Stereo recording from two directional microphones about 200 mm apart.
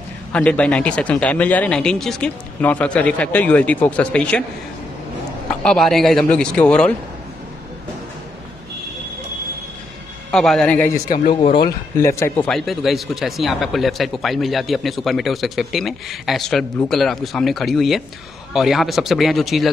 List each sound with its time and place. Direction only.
0.3 s speech: 5° left (ahead or behind)
5.5 s speech: 5° left (ahead or behind)
10.3 s speech: centre (ahead or behind)
11.1 s speech: 45° left (ahead or behind)
12.0 s a man's voice: 15° left (ahead or behind)
12.4 s speech: centre (ahead or behind)